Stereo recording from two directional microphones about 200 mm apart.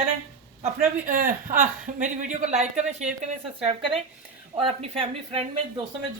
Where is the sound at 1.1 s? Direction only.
40° right (ahead or behind).